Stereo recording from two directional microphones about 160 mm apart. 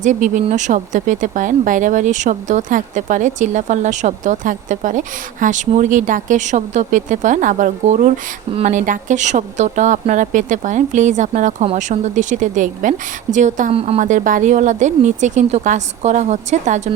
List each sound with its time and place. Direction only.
0.0 s speech: 50° right (ahead or behind)
14.0 s speech: 55° right (ahead or behind)